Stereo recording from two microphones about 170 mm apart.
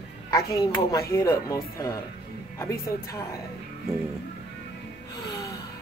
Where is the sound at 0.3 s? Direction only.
20° left (ahead or behind).